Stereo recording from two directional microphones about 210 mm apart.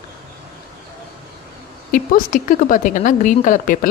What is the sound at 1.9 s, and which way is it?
Speech, 40° left (ahead or behind).